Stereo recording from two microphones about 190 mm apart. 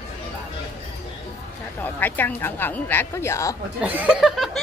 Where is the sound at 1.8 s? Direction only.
10° left (ahead or behind).